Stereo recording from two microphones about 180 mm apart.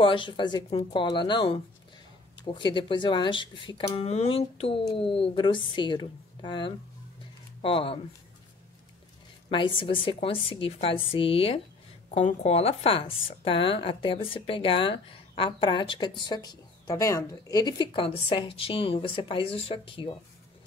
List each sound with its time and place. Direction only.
0.0 s a woman's voice: 25° left (ahead or behind)
9.5 s a woman's voice: 30° left (ahead or behind)